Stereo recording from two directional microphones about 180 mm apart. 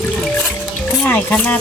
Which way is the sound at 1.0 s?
5° left (ahead or behind).